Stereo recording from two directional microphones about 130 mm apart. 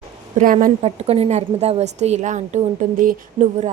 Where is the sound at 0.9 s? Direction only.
55° right (ahead or behind); by 3.5 s 80° right.